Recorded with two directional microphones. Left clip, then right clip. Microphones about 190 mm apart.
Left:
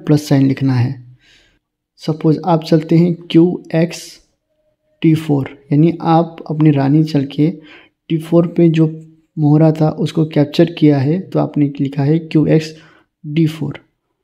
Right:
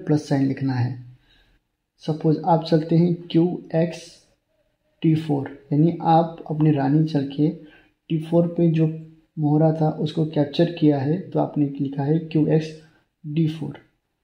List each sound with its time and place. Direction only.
0.0 s speech: 30° left (ahead or behind)
2.0 s speech: 30° left (ahead or behind)